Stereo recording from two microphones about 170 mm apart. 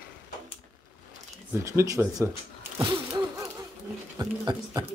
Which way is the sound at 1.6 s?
15° right (ahead or behind).